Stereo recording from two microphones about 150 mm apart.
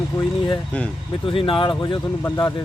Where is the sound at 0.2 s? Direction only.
30° left (ahead or behind).